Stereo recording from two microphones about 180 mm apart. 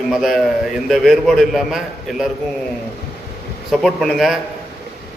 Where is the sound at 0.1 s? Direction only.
Centre (ahead or behind).